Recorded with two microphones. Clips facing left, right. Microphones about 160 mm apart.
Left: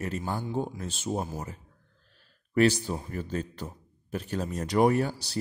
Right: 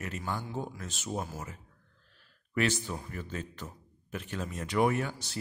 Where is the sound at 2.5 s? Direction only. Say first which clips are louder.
Left 7 dB; 35° left (ahead or behind).